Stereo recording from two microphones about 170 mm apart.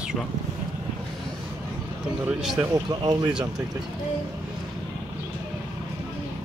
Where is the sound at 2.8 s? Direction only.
25° right (ahead or behind).